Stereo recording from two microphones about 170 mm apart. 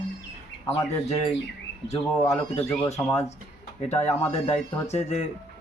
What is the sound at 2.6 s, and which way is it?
Speech, 20° left (ahead or behind).